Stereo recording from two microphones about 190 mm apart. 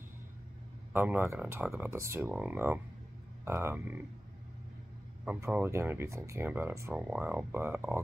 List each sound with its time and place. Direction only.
0.9 s speech: 10° right (ahead or behind)
5.2 s speech: 10° right (ahead or behind)